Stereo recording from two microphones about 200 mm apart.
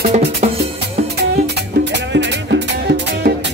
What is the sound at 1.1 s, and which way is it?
Music, 55° right (ahead or behind).